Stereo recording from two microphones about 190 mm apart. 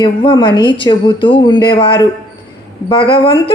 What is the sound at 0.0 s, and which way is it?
A woman's voice, 25° left (ahead or behind).